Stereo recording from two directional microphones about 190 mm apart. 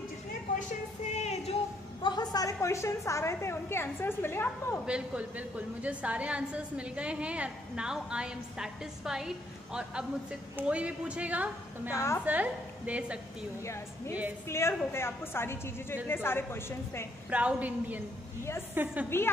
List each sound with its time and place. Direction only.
1.1 s a sound: 35° left (ahead or behind)
2.0 s a woman's voice: 20° left (ahead or behind)
4.8 s a woman's voice: 5° right (ahead or behind)
11.9 s a woman's voice: 15° left (ahead or behind)
12.3 s a woman's voice: 5° right (ahead or behind)
14.5 s a woman's voice: 15° left (ahead or behind)
17.3 s a woman's voice: 5° right (ahead or behind)
19.0 s a woman's voice: 10° left (ahead or behind)